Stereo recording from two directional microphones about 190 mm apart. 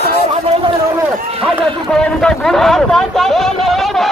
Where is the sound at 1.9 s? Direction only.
5° left (ahead or behind).